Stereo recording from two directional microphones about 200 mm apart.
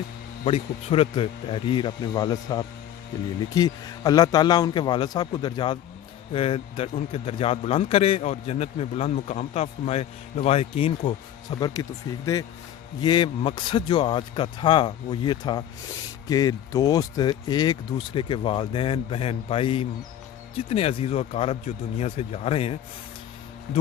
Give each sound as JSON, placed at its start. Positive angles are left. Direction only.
{"t": 0.4, "sound": "a man's voice", "side_deg": 30}